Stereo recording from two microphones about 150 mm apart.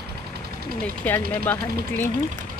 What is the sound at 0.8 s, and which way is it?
Speech, 10° left (ahead or behind).